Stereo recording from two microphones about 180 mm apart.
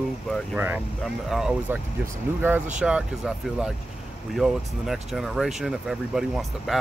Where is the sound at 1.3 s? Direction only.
5° right (ahead or behind).